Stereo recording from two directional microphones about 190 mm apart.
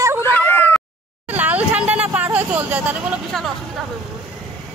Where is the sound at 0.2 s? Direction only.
10° left (ahead or behind).